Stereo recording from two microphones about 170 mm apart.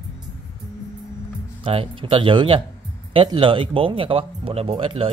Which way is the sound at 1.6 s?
30° right (ahead or behind).